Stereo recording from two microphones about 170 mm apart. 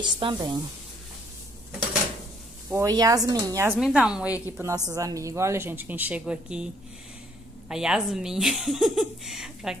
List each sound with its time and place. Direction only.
0.0 s speech: 25° right (ahead or behind)
2.7 s speech: 20° right (ahead or behind)
3.8 s speech: 5° right (ahead or behind)
4.6 s speech: 15° right (ahead or behind)